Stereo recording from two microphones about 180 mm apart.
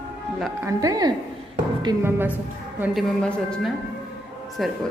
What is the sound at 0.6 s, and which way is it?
A woman's voice, 20° right (ahead or behind).